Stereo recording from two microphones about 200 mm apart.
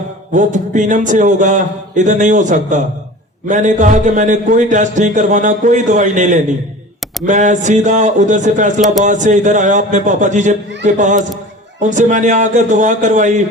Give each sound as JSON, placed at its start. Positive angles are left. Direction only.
{"t": 0.3, "sound": "a man's voice", "side_deg": -40}